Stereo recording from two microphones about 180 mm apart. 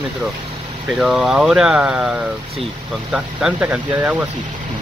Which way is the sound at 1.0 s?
Centre (ahead or behind).